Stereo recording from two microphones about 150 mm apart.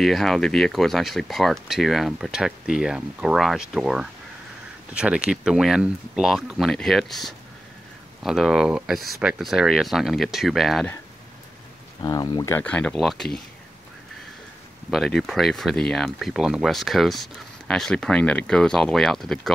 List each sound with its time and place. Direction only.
0.0 s speech: centre (ahead or behind)
12.0 s speech: 25° left (ahead or behind)
12.5 s speech: 10° left (ahead or behind)
14.9 s speech: centre (ahead or behind)